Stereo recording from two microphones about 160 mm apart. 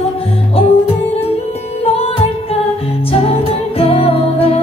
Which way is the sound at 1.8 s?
40° left (ahead or behind).